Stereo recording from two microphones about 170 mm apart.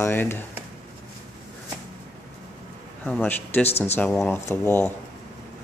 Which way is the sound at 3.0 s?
5° left (ahead or behind).